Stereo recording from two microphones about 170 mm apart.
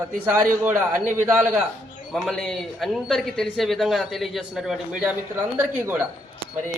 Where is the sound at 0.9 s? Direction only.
50° right (ahead or behind).